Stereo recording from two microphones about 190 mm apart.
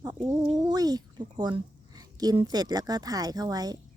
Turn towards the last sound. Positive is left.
turn(degrees=-20)  # may be behind; listen again after turning